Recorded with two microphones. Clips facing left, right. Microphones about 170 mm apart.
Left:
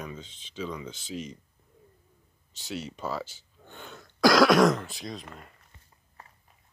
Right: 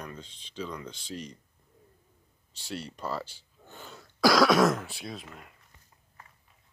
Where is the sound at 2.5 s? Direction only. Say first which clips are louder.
Left 2 dB; centre (ahead or behind).